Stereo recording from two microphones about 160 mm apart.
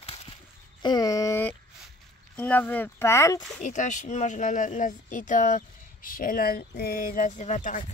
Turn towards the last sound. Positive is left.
turn(degrees=55)  # may be behind; listen again after turning